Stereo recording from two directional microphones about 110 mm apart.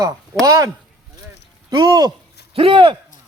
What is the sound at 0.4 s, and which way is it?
Speech, 30° right (ahead or behind).